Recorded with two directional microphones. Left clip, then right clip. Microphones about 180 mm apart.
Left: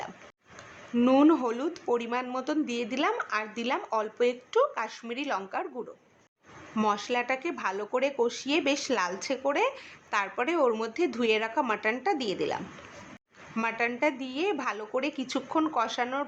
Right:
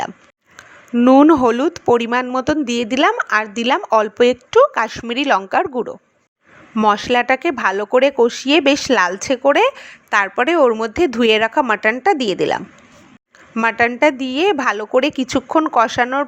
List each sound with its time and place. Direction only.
0.9 s speech: 40° right (ahead or behind)